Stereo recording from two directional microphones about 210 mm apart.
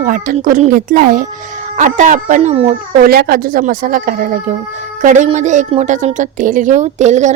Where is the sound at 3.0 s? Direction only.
45° right (ahead or behind).